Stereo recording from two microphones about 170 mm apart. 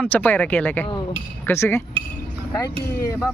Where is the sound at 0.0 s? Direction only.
10° left (ahead or behind).